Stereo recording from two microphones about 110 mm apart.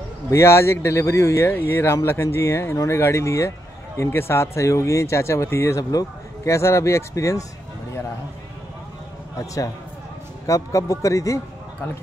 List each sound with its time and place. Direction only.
0.3 s speech: 25° left (ahead or behind)
9.4 s speech: 30° left (ahead or behind)